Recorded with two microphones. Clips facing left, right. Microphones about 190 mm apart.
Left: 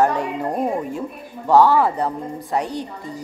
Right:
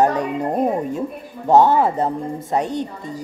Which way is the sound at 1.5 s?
20° right (ahead or behind).